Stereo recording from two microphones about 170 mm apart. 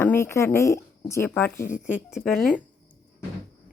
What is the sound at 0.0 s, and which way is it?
Speech, 15° left (ahead or behind).